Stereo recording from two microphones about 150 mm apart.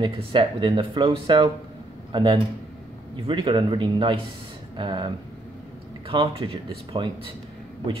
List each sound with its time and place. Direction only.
0.0 s speech: 35° right (ahead or behind)